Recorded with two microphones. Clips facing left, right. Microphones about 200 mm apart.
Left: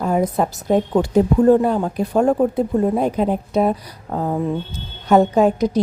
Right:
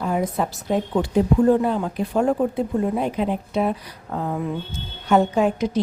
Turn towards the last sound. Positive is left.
turn(degrees=40)  # may be behind; listen again after turning